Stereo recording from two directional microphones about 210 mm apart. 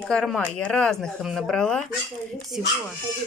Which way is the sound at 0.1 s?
Centre (ahead or behind).